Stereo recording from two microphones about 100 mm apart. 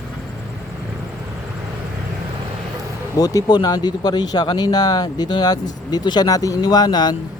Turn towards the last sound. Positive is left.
turn(degrees=45)  # may be behind; listen again after turning